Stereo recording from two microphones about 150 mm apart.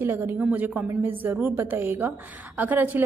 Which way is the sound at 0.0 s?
15° right (ahead or behind).